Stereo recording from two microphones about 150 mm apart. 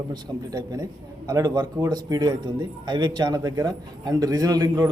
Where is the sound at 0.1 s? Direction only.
25° right (ahead or behind).